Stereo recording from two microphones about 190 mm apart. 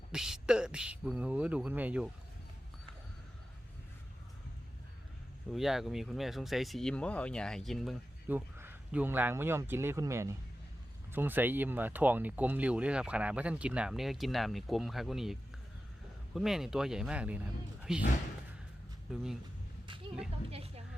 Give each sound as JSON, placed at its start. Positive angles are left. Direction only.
{"t": 0.1, "sound": "speech", "side_deg": -5}
{"t": 5.5, "sound": "speech", "side_deg": 0}
{"t": 8.3, "sound": "speech", "side_deg": -10}
{"t": 19.1, "sound": "speech", "side_deg": 0}
{"t": 20.5, "sound": "a sound", "side_deg": -30}